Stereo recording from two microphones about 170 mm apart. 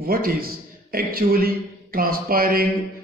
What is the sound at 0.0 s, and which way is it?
A man's voice, 60° right (ahead or behind).